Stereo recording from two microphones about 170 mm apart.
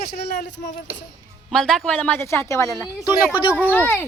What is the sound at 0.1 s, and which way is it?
Speech, 75° left (ahead or behind).